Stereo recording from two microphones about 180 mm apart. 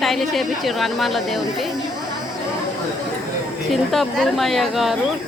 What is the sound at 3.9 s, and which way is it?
A woman's voice, centre (ahead or behind).